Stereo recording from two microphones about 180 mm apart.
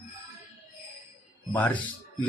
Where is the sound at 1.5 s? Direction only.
10° left (ahead or behind).